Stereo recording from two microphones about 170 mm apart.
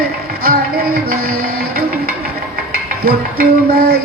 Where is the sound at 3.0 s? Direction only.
60° right (ahead or behind).